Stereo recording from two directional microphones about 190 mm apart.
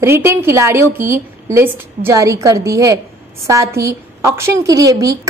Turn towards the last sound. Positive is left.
turn(degrees=-20)  # may be behind; listen again after turning